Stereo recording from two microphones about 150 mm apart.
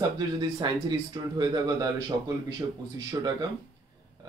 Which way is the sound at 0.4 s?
25° right (ahead or behind).